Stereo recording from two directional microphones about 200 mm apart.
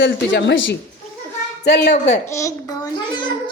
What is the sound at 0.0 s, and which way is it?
A woman's voice, 65° left (ahead or behind).